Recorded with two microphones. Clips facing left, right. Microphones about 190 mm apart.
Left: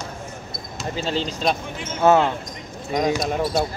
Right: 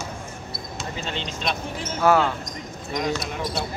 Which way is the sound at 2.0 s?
25° left (ahead or behind).